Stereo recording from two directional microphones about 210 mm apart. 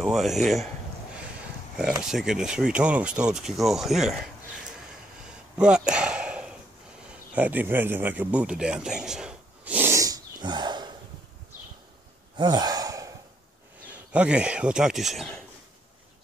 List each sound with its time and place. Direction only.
0.0 s speech: centre (ahead or behind)
2.0 s speech: centre (ahead or behind)
5.6 s a sound: 5° right (ahead or behind); by 10.9 s 20° right (ahead or behind)
12.4 s gasp: 20° right (ahead or behind)
14.1 s speech: 5° right (ahead or behind)